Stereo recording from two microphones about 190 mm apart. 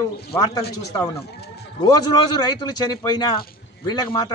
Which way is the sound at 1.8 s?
20° left (ahead or behind).